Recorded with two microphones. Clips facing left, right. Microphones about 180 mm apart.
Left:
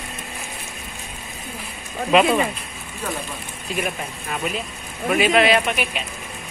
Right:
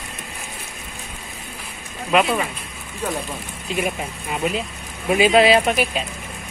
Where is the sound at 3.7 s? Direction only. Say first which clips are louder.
Right 2 dB; 20° right (ahead or behind); by 6.0 s 35° right (ahead or behind).